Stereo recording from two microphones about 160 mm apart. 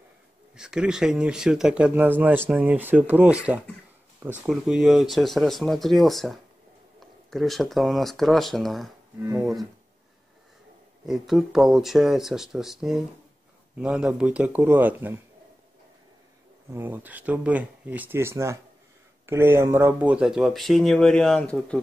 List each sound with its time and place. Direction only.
0.6 s speech: 5° right (ahead or behind)
4.5 s speech: 5° right (ahead or behind)
9.2 s speech: 15° right (ahead or behind)
11.1 s speech: centre (ahead or behind)
16.7 s speech: 10° right (ahead or behind); by 21.7 s 5° left (ahead or behind)